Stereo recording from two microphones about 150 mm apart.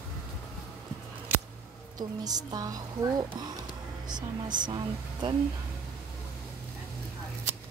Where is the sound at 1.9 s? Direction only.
25° right (ahead or behind).